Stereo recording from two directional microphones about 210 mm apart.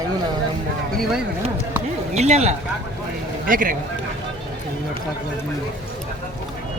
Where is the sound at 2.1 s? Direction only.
30° right (ahead or behind).